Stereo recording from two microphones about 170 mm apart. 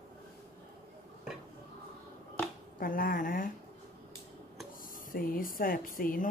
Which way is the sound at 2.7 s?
55° left (ahead or behind).